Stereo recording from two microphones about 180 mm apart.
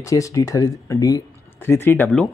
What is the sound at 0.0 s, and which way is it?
Speech, 20° left (ahead or behind).